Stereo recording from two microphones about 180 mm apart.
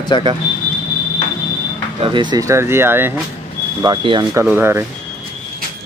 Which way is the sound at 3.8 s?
25° right (ahead or behind).